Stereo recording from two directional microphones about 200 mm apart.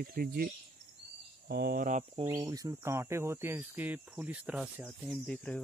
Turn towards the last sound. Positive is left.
turn(degrees=5)  # may be behind; listen again after turning